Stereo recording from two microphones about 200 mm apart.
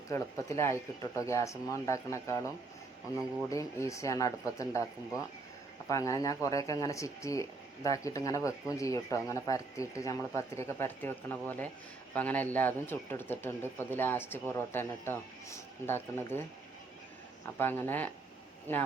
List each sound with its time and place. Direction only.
0.1 s speech: 15° left (ahead or behind)
3.5 s speech: 15° left (ahead or behind)
17.6 s speech: 10° left (ahead or behind)